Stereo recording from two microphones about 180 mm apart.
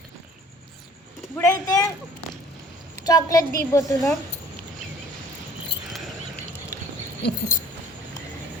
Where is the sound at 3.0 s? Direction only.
20° left (ahead or behind).